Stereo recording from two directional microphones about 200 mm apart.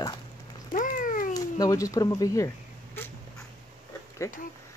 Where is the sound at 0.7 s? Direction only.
40° left (ahead or behind).